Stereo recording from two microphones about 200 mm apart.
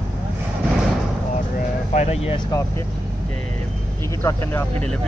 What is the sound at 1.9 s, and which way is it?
Speech, 30° left (ahead or behind).